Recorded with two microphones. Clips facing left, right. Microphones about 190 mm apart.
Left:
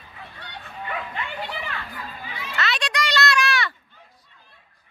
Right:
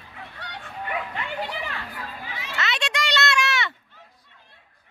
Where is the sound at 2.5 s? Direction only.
20° right (ahead or behind).